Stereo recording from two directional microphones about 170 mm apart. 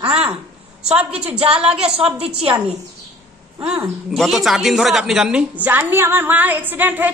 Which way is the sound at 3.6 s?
15° right (ahead or behind).